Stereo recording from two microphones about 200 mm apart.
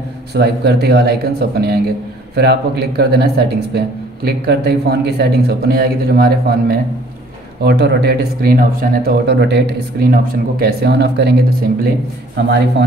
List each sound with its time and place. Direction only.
0.3 s speech: 55° right (ahead or behind)